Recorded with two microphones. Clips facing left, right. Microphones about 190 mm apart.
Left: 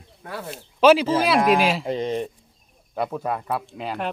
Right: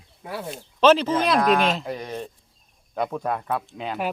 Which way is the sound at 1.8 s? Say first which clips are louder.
Left 6 dB; 25° left (ahead or behind).